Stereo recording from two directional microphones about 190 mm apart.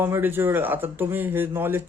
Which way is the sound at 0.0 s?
10° right (ahead or behind).